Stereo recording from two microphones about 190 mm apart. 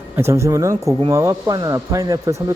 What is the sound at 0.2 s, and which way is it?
A man's voice, 15° right (ahead or behind).